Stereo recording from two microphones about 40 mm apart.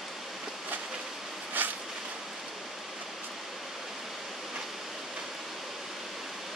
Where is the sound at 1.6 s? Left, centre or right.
Right.